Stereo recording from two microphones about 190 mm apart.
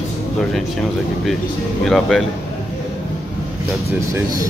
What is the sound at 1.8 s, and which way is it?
Speech, centre (ahead or behind).